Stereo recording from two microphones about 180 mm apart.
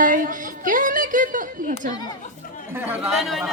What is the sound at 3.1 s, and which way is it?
Speech, centre (ahead or behind).